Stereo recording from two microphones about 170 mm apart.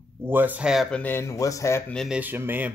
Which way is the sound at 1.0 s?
15° left (ahead or behind).